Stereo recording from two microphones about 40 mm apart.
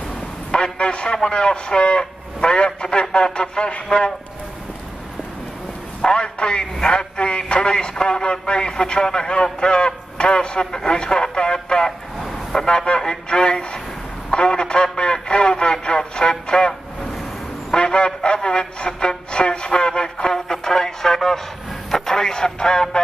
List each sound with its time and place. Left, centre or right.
0.5 s a man's voice: left
6.0 s a man's voice: left
12.2 s vehicle: centre
12.6 s speech: left
17.7 s music: left